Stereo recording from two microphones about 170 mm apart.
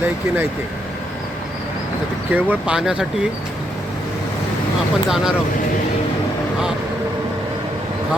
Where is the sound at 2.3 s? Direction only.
5° right (ahead or behind).